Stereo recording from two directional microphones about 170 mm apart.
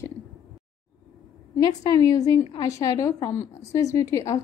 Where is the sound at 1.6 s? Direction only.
20° left (ahead or behind).